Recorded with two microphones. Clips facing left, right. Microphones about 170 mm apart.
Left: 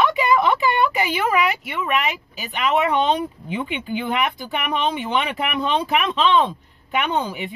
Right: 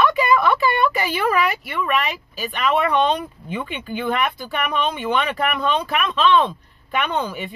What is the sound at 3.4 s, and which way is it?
A woman's voice, 15° left (ahead or behind).